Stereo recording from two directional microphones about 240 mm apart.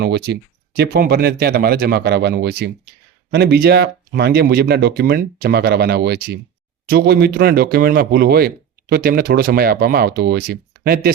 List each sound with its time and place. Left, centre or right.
0.0 s speech: right